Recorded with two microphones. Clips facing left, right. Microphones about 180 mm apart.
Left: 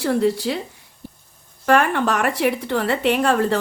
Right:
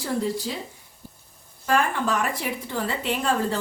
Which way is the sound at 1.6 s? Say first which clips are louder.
Left 6 dB; 70° left (ahead or behind).